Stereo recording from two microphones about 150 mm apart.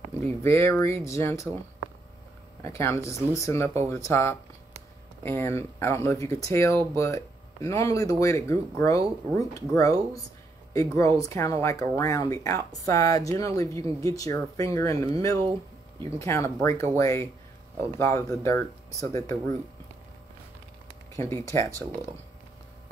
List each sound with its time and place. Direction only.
0.3 s speech: 20° left (ahead or behind)
2.6 s speech: 20° left (ahead or behind)
21.3 s speech: 20° left (ahead or behind)